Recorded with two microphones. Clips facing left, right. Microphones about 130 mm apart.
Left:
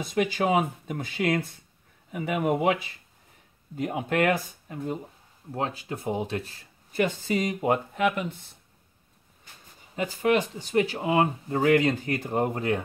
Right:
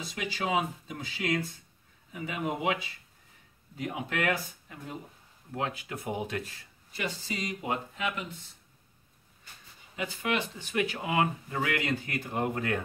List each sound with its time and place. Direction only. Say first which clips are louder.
0.0 s speech: left 9 dB; 50° left (ahead or behind)
5.5 s speech: left 4 dB; 35° left (ahead or behind)
6.9 s speech: left 10 dB; 50° left (ahead or behind)
9.9 s speech: left 8 dB; 45° left (ahead or behind)
12.4 s speech: left 4 dB; 30° left (ahead or behind)